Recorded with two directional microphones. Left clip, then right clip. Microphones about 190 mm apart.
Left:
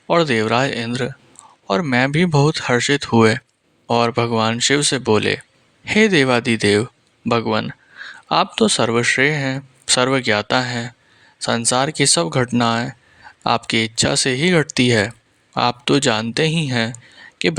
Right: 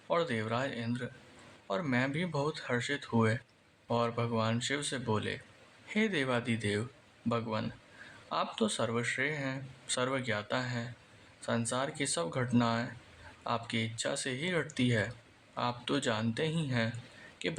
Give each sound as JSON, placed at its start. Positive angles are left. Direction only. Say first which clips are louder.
{"t": 0.1, "sound": "speech", "louder": "left 16 dB", "side_deg": 45}